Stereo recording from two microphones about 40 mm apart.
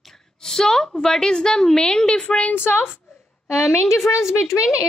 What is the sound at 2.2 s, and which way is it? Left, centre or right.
Speech, left.